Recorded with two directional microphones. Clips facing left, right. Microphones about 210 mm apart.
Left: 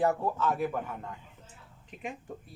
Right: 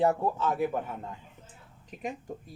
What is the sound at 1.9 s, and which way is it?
Speech, 40° right (ahead or behind).